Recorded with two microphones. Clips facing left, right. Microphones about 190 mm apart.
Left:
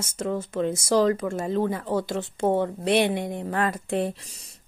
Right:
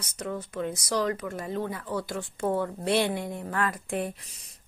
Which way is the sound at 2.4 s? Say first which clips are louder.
Left 4 dB; 25° left (ahead or behind).